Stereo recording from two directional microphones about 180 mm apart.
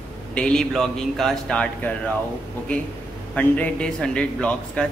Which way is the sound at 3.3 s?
10° left (ahead or behind).